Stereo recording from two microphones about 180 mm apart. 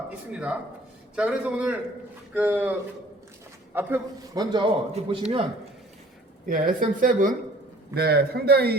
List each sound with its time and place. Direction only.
0.3 s a man's voice: 5° right (ahead or behind)
3.8 s a man's voice: 10° right (ahead or behind)
4.5 s a man's voice: 30° right (ahead or behind)
6.5 s speech: 50° right (ahead or behind)
7.9 s a man's voice: 60° right (ahead or behind)